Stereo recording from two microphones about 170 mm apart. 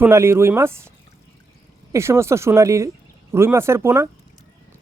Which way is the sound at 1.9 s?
15° right (ahead or behind).